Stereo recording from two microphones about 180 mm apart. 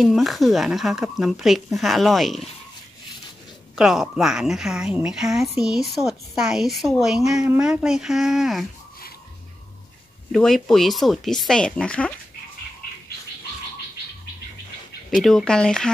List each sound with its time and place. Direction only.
0.0 s a woman's voice: centre (ahead or behind)
3.7 s a woman's voice: centre (ahead or behind)
10.3 s a woman's voice: centre (ahead or behind)
15.0 s a woman's voice: centre (ahead or behind)